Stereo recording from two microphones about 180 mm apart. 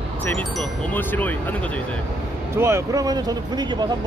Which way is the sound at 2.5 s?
15° right (ahead or behind).